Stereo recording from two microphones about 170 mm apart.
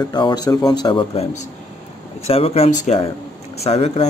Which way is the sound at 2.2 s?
35° left (ahead or behind).